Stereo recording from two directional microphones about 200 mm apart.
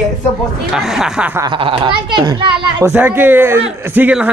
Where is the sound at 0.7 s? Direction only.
Centre (ahead or behind).